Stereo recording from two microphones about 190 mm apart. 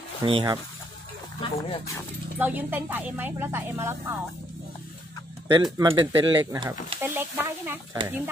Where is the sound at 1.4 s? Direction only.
25° left (ahead or behind).